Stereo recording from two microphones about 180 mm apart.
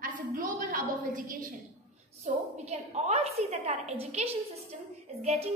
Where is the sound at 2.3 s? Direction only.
40° right (ahead or behind).